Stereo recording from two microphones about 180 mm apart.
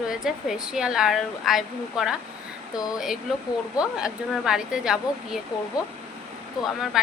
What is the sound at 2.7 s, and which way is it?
Speech, 20° left (ahead or behind).